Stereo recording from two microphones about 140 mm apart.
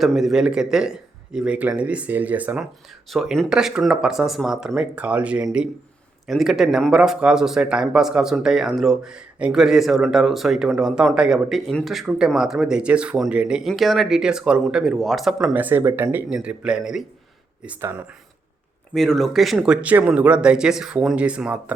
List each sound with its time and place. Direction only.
0.0 s speech: centre (ahead or behind)
3.1 s speech: centre (ahead or behind); by 16.0 s 20° right (ahead or behind)
16.0 s speech: 5° right (ahead or behind)
17.7 s speech: 20° right (ahead or behind)
18.9 s speech: 5° left (ahead or behind)